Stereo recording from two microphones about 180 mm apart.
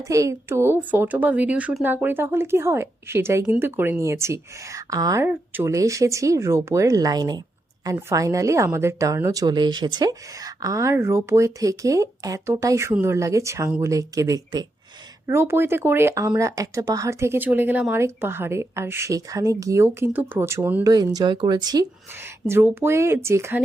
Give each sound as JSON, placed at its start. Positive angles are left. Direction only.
{"t": 0.0, "sound": "a woman's voice", "side_deg": -15}
{"t": 21.2, "sound": "a woman's voice", "side_deg": -25}